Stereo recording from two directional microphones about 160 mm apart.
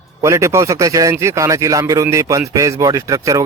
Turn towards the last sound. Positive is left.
turn(degrees=-20)  # may be behind; listen again after turning